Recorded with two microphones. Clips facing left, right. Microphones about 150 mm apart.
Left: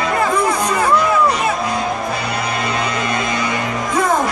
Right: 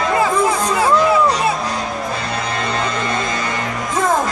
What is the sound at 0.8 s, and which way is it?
Music, 20° right (ahead or behind).